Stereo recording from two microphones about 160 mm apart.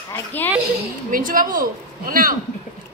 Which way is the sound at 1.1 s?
60° right (ahead or behind).